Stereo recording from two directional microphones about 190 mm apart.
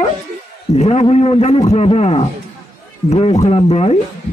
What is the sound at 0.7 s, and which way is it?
A man's voice, 35° left (ahead or behind).